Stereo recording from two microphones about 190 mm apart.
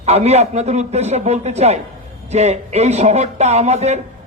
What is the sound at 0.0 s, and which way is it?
A man's voice, 35° right (ahead or behind).